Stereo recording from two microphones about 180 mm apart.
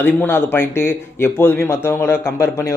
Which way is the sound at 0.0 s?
10° left (ahead or behind).